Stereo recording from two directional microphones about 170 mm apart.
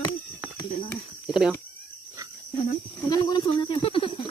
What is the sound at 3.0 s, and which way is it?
Snake, 25° left (ahead or behind).